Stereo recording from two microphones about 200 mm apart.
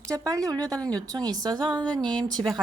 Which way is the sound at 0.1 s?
15° right (ahead or behind).